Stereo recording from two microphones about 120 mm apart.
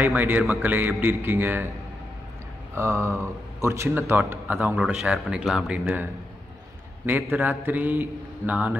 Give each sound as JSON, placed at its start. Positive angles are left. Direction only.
{"t": 0.0, "sound": "a man's voice", "side_deg": -15}
{"t": 2.7, "sound": "a man's voice", "side_deg": -25}
{"t": 7.1, "sound": "a man's voice", "side_deg": -15}